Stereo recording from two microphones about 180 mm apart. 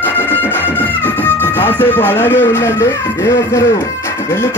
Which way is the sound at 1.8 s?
10° left (ahead or behind).